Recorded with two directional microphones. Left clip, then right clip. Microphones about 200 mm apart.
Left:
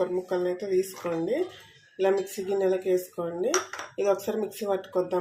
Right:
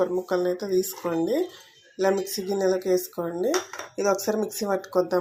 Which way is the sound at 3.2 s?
35° right (ahead or behind).